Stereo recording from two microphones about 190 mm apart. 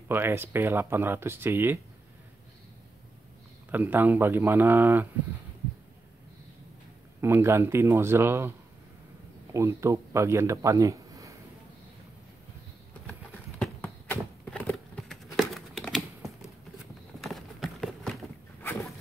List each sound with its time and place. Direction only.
0.1 s speech: 10° right (ahead or behind)
3.7 s speech: 10° right (ahead or behind)
7.2 s speech: 15° right (ahead or behind)
13.0 s a sound: 5° left (ahead or behind)
15.3 s crumpling: centre (ahead or behind)
17.2 s clip-clop: centre (ahead or behind)
18.6 s a sound: 10° left (ahead or behind)